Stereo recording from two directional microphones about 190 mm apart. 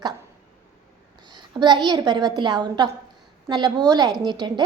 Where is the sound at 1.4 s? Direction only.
25° right (ahead or behind).